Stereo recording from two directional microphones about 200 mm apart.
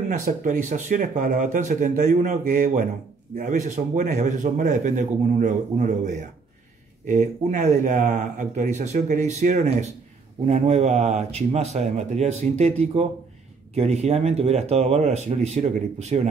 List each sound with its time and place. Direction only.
0.1 s speech: 40° right (ahead or behind)